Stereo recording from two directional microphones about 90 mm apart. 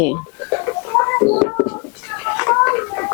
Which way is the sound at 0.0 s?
20° left (ahead or behind).